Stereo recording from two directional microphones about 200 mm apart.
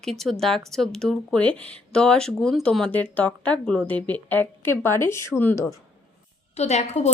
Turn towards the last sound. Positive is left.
turn(degrees=35)  # may be behind; listen again after turning